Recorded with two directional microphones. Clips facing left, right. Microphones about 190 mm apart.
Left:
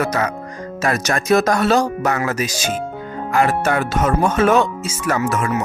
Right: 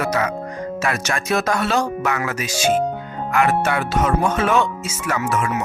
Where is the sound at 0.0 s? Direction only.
40° left (ahead or behind).